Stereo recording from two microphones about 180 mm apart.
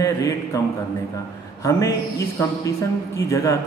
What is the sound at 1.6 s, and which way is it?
A man's voice, 15° left (ahead or behind).